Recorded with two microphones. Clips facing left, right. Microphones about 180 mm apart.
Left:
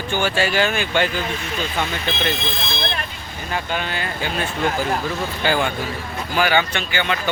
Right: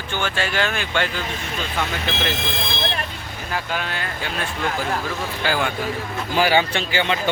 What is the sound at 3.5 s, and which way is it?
Speech, centre (ahead or behind).